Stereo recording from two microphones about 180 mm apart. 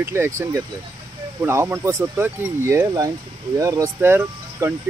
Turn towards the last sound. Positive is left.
turn(degrees=-15)  # may be behind; listen again after turning